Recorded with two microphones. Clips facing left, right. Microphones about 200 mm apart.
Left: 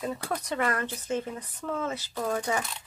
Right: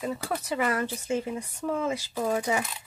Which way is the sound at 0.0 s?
Centre (ahead or behind).